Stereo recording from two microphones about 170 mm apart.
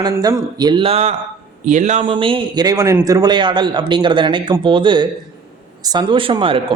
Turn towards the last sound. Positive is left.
turn(degrees=-30)  # may be behind; listen again after turning